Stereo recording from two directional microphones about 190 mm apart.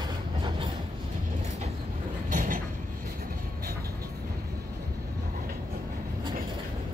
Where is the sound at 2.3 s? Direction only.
45° right (ahead or behind).